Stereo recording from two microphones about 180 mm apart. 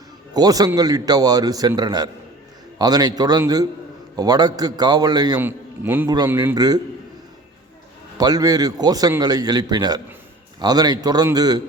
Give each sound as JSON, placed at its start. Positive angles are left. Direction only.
{"t": 0.3, "sound": "a man's voice", "side_deg": -20}
{"t": 5.4, "sound": "a man's voice", "side_deg": -10}
{"t": 8.2, "sound": "a man's voice", "side_deg": -20}